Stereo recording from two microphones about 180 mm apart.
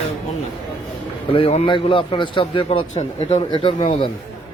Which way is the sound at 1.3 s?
35° left (ahead or behind).